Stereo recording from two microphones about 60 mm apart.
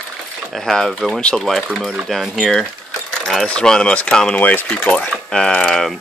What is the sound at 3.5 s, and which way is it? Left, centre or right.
Speech, centre.